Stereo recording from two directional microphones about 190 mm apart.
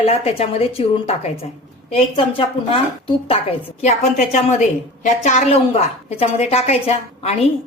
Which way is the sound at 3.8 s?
35° left (ahead or behind).